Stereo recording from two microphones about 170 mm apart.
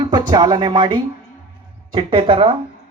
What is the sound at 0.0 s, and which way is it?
Speech, 25° right (ahead or behind).